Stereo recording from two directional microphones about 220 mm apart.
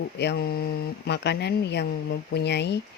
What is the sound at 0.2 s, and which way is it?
Speech, 50° left (ahead or behind).